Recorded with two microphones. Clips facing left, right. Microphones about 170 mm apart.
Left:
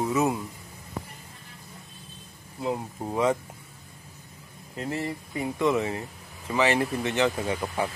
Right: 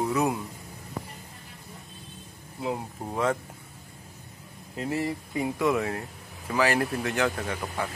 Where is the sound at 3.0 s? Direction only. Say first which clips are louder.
Left 3 dB; 10° left (ahead or behind).